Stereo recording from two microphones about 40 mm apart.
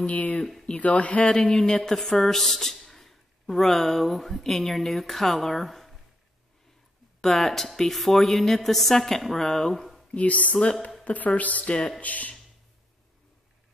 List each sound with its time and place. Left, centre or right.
0.0 s a woman's voice: left
1.2 s a woman's voice: centre
7.2 s a woman's voice: centre
10.1 s a woman's voice: left
10.5 s speech: left
11.1 s a woman's voice: left
11.6 s speech: left
12.0 s a woman's voice: left